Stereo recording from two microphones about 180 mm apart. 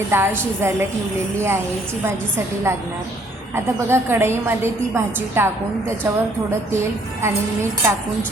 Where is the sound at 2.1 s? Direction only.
15° right (ahead or behind).